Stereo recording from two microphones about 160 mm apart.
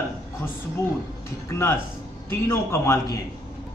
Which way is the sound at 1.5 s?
15° left (ahead or behind).